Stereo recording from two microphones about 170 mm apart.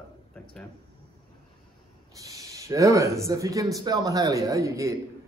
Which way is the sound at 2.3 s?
20° right (ahead or behind).